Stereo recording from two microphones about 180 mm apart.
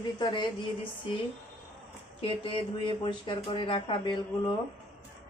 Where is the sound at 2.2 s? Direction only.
30° left (ahead or behind).